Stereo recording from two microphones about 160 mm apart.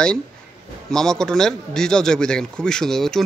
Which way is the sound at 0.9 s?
5° left (ahead or behind).